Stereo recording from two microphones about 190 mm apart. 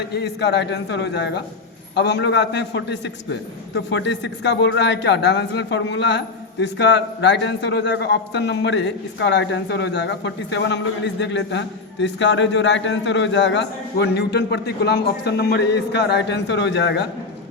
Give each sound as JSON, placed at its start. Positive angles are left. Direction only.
{"t": 0.1, "sound": "a man's voice", "side_deg": 60}